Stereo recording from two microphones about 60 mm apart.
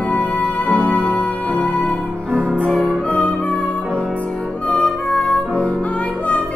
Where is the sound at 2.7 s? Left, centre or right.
Centre.